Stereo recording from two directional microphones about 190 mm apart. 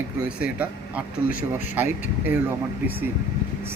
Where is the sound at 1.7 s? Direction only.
10° right (ahead or behind).